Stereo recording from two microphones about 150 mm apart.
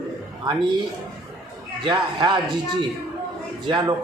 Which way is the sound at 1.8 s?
30° right (ahead or behind).